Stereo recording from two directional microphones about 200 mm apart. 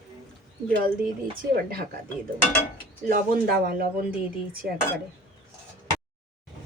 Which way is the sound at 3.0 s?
50° right (ahead or behind).